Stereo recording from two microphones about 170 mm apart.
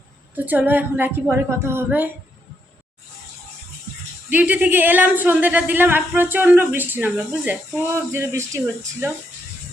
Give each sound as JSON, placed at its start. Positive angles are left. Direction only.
{"t": 0.3, "sound": "speech", "side_deg": -10}
{"t": 4.3, "sound": "speech", "side_deg": -10}